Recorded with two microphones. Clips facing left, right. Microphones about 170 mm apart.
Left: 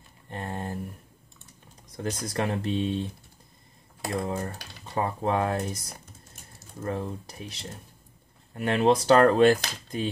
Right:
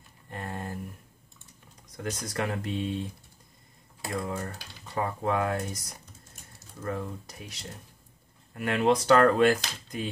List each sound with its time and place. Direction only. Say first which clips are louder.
0.3 s a sound: left 3 dB; 30° left (ahead or behind)
2.0 s speech: left 3 dB; 30° left (ahead or behind)
4.1 s speech: left 3 dB; 30° left (ahead or behind)
8.5 s speech: left 2 dB; 30° left (ahead or behind)